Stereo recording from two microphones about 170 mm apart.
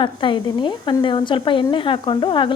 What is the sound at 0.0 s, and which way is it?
A woman's voice, 30° left (ahead or behind).